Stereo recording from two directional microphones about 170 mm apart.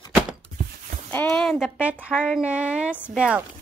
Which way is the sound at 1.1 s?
10° left (ahead or behind).